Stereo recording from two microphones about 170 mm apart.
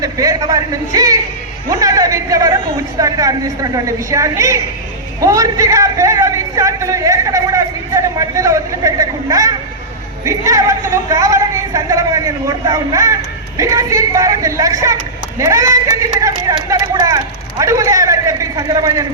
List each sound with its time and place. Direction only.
0.0 s a man's voice: 20° right (ahead or behind)